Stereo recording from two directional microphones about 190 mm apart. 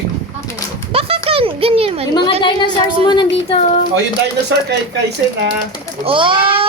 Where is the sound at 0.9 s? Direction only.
30° right (ahead or behind).